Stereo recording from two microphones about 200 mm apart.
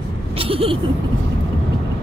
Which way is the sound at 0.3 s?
25° right (ahead or behind).